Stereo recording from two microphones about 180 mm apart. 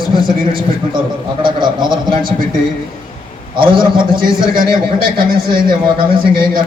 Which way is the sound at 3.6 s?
25° right (ahead or behind).